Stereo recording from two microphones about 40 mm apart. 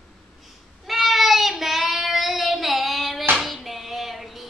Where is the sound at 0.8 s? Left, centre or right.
Centre.